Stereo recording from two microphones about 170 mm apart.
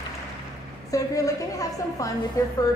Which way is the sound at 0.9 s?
20° left (ahead or behind).